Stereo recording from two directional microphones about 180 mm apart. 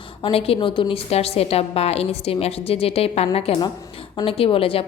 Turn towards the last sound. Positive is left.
turn(degrees=30)  # may be behind; listen again after turning